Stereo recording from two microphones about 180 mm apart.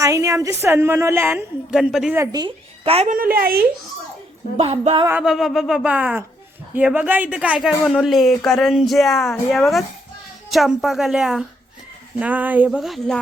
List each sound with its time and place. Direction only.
0.0 s a woman's voice: 15° right (ahead or behind)
1.7 s speech: centre (ahead or behind)
2.1 s speech: 20° right (ahead or behind)
2.8 s speech: 35° right (ahead or behind)
3.1 s a woman's voice: 55° right (ahead or behind)
4.5 s speech: 35° right (ahead or behind)
5.0 s a woman's voice: 5° right (ahead or behind)